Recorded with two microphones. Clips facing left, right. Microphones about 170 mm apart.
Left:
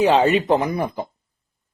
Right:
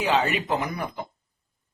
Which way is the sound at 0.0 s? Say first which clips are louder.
Left 8 dB; 30° left (ahead or behind).